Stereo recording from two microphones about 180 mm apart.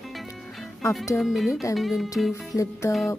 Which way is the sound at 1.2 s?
Centre (ahead or behind).